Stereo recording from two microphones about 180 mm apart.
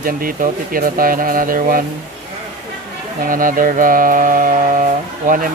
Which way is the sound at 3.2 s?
50° right (ahead or behind).